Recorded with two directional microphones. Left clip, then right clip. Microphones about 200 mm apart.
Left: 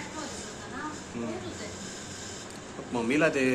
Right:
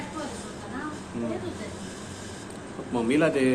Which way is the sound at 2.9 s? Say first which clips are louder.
Right 2 dB; 5° left (ahead or behind).